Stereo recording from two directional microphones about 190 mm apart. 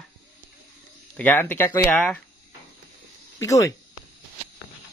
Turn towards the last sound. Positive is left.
turn(degrees=15)  # may be behind; listen again after turning